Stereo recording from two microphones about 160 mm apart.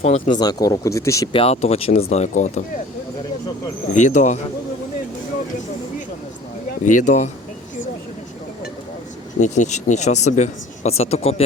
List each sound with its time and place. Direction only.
0.3 s speech: 25° left (ahead or behind)
1.3 s speech: 40° left (ahead or behind)
3.9 s speech: 50° left (ahead or behind)
6.7 s speech: 50° left (ahead or behind)
9.4 s speech: 45° left (ahead or behind)